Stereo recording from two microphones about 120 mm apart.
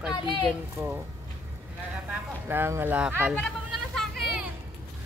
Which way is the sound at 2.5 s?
20° right (ahead or behind).